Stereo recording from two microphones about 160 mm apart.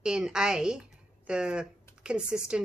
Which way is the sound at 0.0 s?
5° right (ahead or behind).